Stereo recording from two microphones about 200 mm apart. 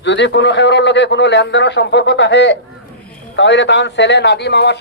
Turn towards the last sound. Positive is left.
turn(degrees=60)  # may be behind; listen again after turning